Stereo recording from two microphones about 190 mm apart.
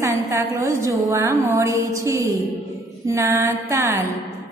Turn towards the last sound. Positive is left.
turn(degrees=-15)  # may be behind; listen again after turning